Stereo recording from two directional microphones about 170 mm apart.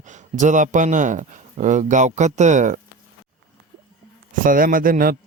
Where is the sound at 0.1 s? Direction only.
45° right (ahead or behind).